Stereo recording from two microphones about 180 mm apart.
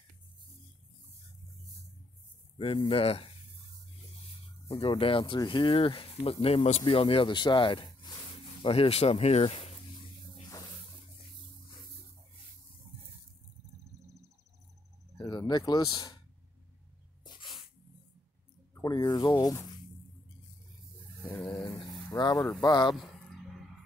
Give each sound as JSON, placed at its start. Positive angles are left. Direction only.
{"t": 2.6, "sound": "speech", "side_deg": 30}
{"t": 4.6, "sound": "speech", "side_deg": 30}
{"t": 15.1, "sound": "speech", "side_deg": 25}
{"t": 18.8, "sound": "speech", "side_deg": 25}
{"t": 21.2, "sound": "dog", "side_deg": 10}
{"t": 22.6, "sound": "speech", "side_deg": 25}